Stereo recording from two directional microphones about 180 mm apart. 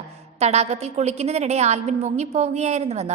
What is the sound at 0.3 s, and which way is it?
A woman's voice, 35° right (ahead or behind).